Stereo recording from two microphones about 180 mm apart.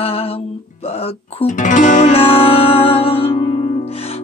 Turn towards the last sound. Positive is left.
turn(degrees=30)  # may be behind; listen again after turning